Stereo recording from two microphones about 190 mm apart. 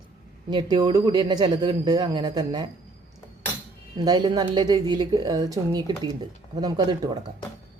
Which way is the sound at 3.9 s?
20° right (ahead or behind).